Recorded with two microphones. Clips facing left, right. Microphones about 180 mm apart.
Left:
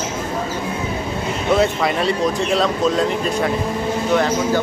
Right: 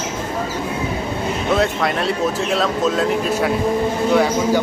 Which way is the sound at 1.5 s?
Centre (ahead or behind).